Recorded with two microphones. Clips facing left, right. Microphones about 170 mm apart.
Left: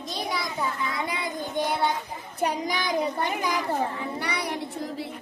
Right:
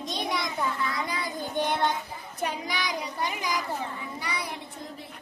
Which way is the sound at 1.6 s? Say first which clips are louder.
Left 1 dB; 10° left (ahead or behind).